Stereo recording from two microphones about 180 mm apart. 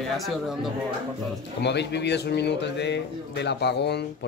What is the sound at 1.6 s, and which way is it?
Speech, 70° left (ahead or behind).